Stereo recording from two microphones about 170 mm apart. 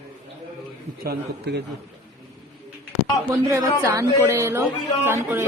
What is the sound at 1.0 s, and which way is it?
Speech, 75° right (ahead or behind).